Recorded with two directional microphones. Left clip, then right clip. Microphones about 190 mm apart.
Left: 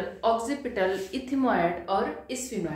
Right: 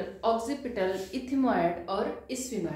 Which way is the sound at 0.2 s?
Centre (ahead or behind).